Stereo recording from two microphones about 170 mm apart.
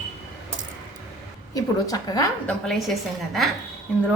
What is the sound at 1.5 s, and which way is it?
Speech, 20° left (ahead or behind).